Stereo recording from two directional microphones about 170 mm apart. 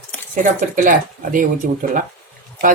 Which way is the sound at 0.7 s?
50° right (ahead or behind).